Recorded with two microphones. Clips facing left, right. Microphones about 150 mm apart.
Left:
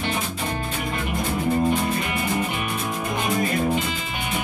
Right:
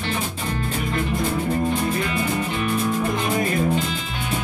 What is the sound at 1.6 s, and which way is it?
Music, 15° left (ahead or behind).